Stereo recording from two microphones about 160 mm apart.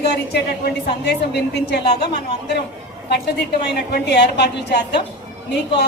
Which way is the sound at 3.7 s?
90° left.